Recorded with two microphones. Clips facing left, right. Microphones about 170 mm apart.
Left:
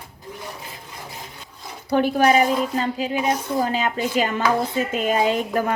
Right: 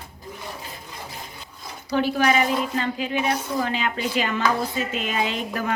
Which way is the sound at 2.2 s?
35° left (ahead or behind).